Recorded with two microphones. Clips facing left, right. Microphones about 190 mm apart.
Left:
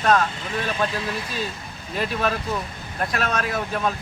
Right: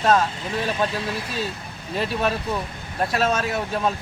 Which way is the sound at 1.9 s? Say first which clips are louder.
Right 1 dB; 30° right (ahead or behind).